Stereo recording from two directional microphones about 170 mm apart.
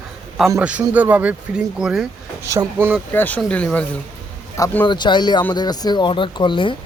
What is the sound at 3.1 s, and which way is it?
Speech, 10° left (ahead or behind).